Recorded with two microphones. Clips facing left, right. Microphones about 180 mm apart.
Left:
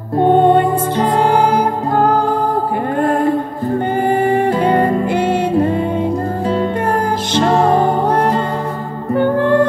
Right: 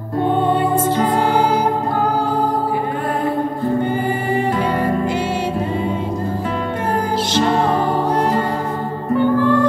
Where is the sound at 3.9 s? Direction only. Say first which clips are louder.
Left 5 dB; 60° left (ahead or behind).